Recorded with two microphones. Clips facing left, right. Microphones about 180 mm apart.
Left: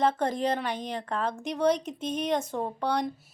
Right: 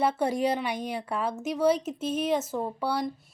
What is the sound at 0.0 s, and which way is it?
A woman's voice, 10° right (ahead or behind).